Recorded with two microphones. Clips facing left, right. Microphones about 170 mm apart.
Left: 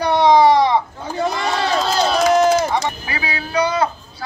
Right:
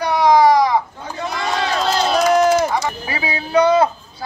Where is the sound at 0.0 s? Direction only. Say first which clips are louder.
Left 1 dB; 25° left (ahead or behind).